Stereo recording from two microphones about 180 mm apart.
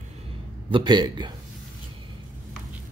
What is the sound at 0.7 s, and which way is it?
Speech, 25° right (ahead or behind).